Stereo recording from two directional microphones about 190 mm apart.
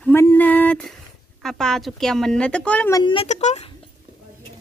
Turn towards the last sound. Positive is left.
turn(degrees=35)  # may be behind; listen again after turning